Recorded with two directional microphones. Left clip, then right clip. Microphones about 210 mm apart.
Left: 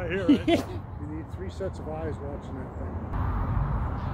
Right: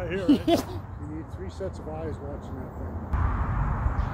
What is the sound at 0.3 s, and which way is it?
Speech, 30° right (ahead or behind).